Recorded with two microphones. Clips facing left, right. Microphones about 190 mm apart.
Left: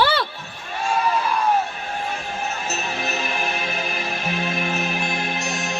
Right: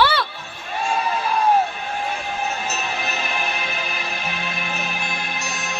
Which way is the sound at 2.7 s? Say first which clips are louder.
Even; 40° left (ahead or behind).